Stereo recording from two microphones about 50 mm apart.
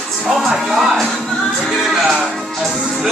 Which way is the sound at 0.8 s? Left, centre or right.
Centre.